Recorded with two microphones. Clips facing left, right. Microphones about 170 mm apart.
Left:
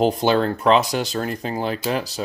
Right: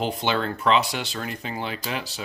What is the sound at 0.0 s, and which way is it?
Speech, 40° left (ahead or behind).